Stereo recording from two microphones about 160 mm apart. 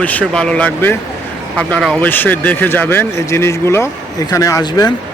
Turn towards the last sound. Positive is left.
turn(degrees=20)  # may be behind; listen again after turning